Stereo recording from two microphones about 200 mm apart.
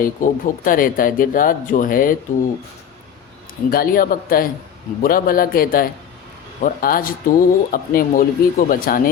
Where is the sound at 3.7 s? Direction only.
45° left (ahead or behind).